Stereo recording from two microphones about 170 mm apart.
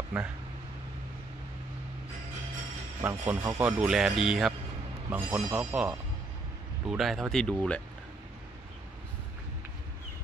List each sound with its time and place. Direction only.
0.1 s speech: 10° right (ahead or behind)
3.0 s speech: 15° right (ahead or behind)
3.8 s speech: 5° right (ahead or behind)